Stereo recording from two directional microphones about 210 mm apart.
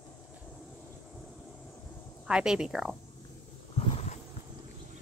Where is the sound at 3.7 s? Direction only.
30° left (ahead or behind).